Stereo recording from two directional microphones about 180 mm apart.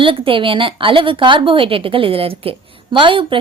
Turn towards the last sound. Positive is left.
turn(degrees=-30)  # may be behind; listen again after turning